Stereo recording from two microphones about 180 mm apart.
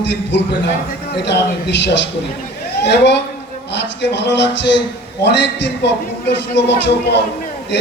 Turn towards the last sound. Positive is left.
turn(degrees=70)  # may be behind; listen again after turning